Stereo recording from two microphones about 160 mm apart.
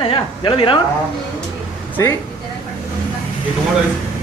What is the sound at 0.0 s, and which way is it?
Speech, 30° left (ahead or behind).